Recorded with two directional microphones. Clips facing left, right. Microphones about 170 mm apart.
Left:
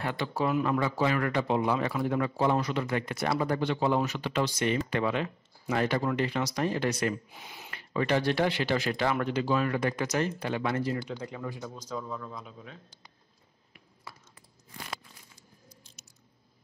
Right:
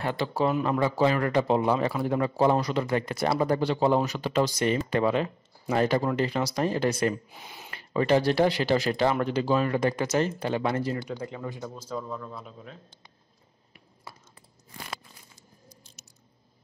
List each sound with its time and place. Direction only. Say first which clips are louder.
0.0 s speech: right 4 dB; 30° right (ahead or behind)